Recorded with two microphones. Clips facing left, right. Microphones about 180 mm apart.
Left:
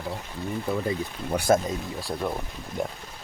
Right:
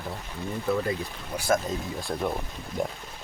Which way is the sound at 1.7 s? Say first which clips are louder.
Even; centre (ahead or behind).